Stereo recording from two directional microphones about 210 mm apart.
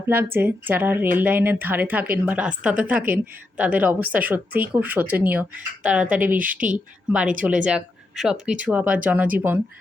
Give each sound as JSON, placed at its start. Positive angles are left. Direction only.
{"t": 0.3, "sound": "speech", "side_deg": -10}
{"t": 6.5, "sound": "speech", "side_deg": -40}
{"t": 6.7, "sound": "speech", "side_deg": -5}